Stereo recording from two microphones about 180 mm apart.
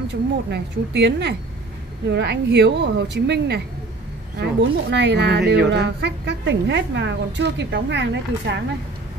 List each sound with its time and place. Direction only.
0.1 s a woman's voice: 70° right (ahead or behind)